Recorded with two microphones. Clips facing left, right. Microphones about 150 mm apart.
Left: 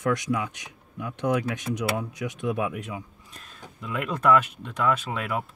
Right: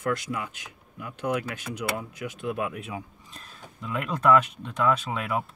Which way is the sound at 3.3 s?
Centre (ahead or behind).